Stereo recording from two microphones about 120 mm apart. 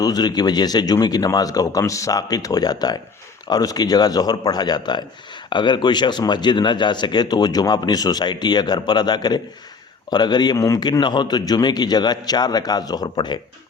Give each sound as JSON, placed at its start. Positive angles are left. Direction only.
{"t": 0.0, "sound": "speech", "side_deg": 35}